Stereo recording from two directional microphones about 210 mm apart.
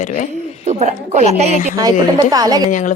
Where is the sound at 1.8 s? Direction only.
15° right (ahead or behind).